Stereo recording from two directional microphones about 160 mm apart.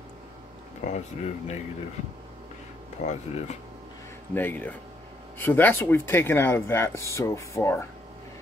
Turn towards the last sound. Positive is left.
turn(degrees=15)  # may be behind; listen again after turning